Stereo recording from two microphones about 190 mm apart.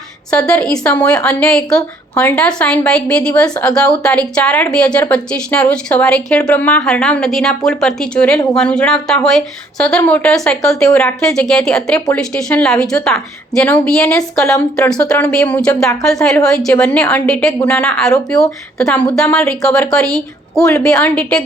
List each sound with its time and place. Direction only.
0.3 s speech: 5° left (ahead or behind)